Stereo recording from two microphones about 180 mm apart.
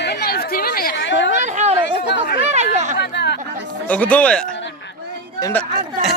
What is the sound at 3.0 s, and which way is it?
Chatter, 70° left (ahead or behind).